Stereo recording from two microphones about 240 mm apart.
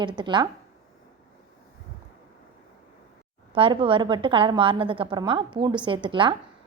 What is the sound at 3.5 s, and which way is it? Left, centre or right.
A woman's voice, right.